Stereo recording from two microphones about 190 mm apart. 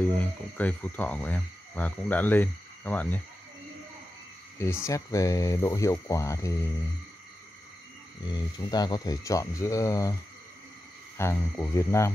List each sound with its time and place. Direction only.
0.6 s speech: 10° left (ahead or behind)
4.6 s speech: 15° left (ahead or behind)
8.3 s speech: 20° left (ahead or behind)
11.1 s speech: 15° left (ahead or behind)